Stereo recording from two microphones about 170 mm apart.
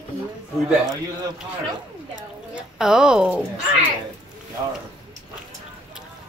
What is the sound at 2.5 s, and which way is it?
Speech, 5° right (ahead or behind).